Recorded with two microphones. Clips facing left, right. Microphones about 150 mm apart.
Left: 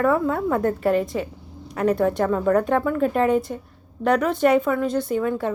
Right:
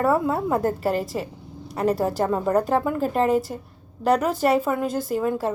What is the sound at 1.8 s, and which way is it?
Speech, 35° right (ahead or behind).